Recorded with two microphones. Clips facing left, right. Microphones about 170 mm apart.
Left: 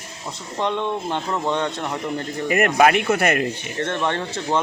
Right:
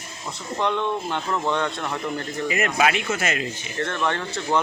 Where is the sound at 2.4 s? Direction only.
50° left (ahead or behind).